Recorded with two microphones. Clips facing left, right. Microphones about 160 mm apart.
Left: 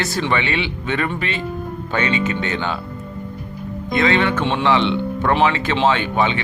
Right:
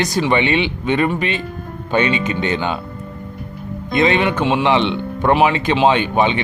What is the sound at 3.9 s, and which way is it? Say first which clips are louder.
Speech: right 2 dB; 20° right (ahead or behind).